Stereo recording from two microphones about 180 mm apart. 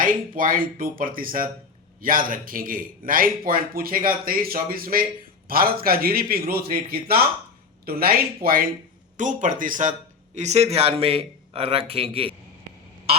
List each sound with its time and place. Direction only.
0.0 s a man's voice: 50° right (ahead or behind)
7.9 s a man's voice: 55° right (ahead or behind); by 12.3 s 30° right (ahead or behind)